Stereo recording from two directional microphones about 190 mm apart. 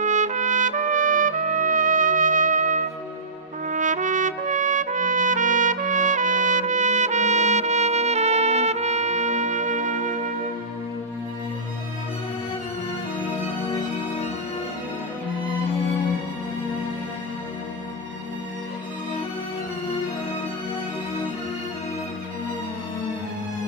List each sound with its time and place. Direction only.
0.0 s trumpet: 40° right (ahead or behind)